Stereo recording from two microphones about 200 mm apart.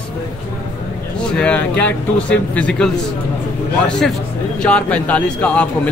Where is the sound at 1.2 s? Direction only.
5° left (ahead or behind).